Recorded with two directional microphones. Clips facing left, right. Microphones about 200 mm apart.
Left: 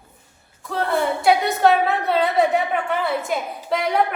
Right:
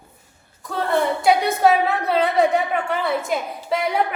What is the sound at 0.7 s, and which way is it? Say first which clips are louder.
A woman's voice: right 1 dB; centre (ahead or behind).